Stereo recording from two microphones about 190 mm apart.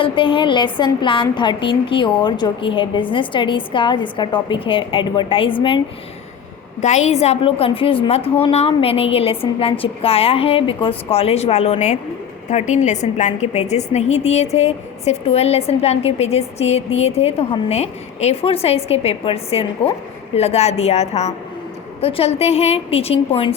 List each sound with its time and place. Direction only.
0.0 s a woman's voice: 25° left (ahead or behind)
6.8 s a woman's voice: 35° left (ahead or behind)